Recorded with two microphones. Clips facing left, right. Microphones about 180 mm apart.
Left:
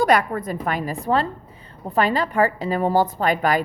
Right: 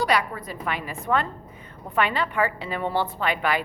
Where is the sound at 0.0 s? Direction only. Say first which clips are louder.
Left 6 dB; 50° left (ahead or behind).